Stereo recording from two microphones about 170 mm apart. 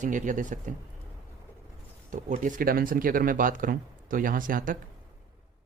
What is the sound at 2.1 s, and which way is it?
Speech, 50° right (ahead or behind).